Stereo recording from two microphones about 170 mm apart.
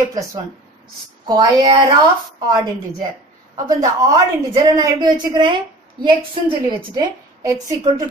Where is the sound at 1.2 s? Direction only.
25° right (ahead or behind).